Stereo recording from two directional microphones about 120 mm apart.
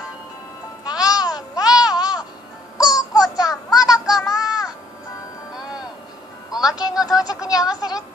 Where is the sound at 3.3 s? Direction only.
30° left (ahead or behind).